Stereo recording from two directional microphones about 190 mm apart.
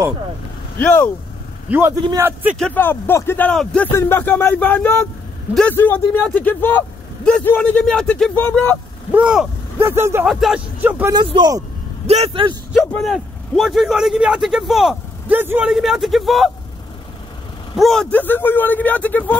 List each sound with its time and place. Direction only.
0.7 s speech: 10° left (ahead or behind)
1.7 s speech: 10° right (ahead or behind)
2.6 s a man's voice: 10° left (ahead or behind); by 10.2 s 15° right (ahead or behind)
10.2 s a man's voice: centre (ahead or behind)
11.1 s speech: 25° right (ahead or behind)
12.7 s a man's voice: centre (ahead or behind)
17.7 s speech: centre (ahead or behind)